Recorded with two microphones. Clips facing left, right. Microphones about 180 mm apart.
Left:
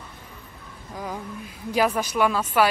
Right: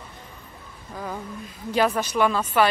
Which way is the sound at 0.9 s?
10° left (ahead or behind).